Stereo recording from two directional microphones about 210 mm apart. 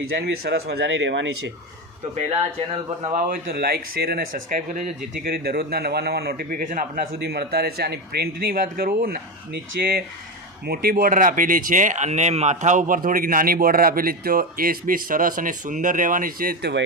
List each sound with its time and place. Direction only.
0.2 s speech: 50° right (ahead or behind)
3.0 s speech: 40° right (ahead or behind)